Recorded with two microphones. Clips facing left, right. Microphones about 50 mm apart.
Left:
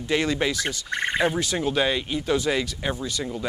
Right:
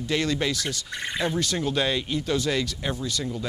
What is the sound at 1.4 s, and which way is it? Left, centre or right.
Speech, centre.